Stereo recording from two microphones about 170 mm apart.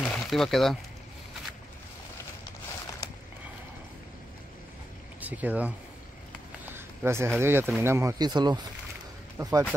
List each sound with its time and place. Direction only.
0.0 s a sound: 5° left (ahead or behind)
5.2 s speech: 10° right (ahead or behind)
6.7 s speech: 15° right (ahead or behind)